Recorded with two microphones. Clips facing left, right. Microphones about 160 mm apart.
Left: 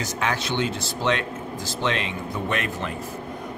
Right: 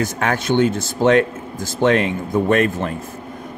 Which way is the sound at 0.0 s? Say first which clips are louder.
Right 6 dB; 50° right (ahead or behind).